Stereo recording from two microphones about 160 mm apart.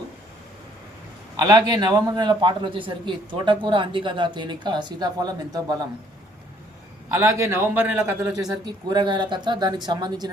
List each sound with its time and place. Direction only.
1.4 s a man's voice: 25° right (ahead or behind)
7.1 s a man's voice: 15° right (ahead or behind)
8.6 s a man's voice: 25° right (ahead or behind)